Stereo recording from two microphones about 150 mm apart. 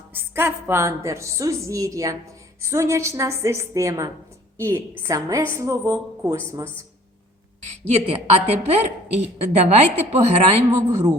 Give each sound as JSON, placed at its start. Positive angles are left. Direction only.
{"t": 0.1, "sound": "a woman's voice", "side_deg": -15}
{"t": 7.7, "sound": "a woman's voice", "side_deg": -45}